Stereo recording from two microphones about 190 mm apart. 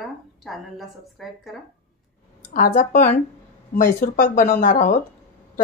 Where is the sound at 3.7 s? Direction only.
45° left (ahead or behind).